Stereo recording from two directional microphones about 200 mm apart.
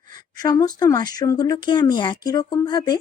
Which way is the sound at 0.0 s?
40° right (ahead or behind).